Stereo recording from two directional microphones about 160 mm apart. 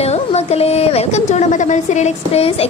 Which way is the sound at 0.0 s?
40° left (ahead or behind).